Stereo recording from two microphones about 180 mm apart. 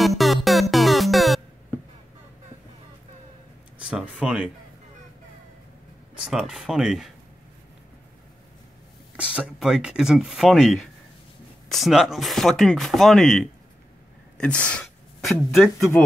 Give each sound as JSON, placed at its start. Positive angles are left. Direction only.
{"t": 0.0, "sound": "music", "side_deg": 0}
{"t": 4.2, "sound": "speech", "side_deg": -5}
{"t": 6.1, "sound": "speech", "side_deg": -5}
{"t": 9.1, "sound": "speech", "side_deg": -5}